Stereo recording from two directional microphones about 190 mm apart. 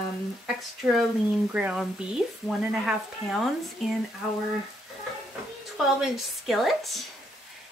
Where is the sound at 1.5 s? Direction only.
5° right (ahead or behind).